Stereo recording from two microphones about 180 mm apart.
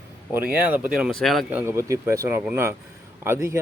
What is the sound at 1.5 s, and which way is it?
Speech, 15° right (ahead or behind).